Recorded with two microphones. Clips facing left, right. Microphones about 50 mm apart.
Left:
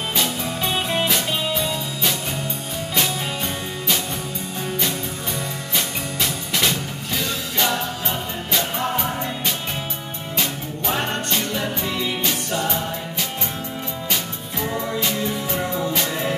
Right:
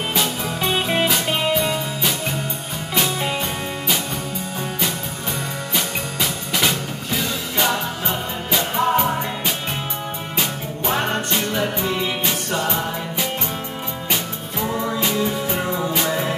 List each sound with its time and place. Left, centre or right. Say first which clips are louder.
0.1 s music: right 1 dB; centre
0.7 s music: right 2 dB; right
5.8 s music: right 1 dB; centre
11.0 s music: right 2 dB; centre
15.7 s music: right 2 dB; centre